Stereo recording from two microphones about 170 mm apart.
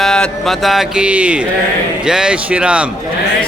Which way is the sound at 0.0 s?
5° left (ahead or behind).